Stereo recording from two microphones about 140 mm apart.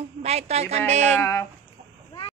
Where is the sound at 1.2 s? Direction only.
20° left (ahead or behind).